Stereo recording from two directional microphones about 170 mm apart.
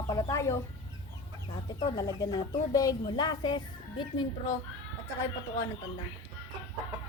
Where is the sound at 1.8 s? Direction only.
25° left (ahead or behind).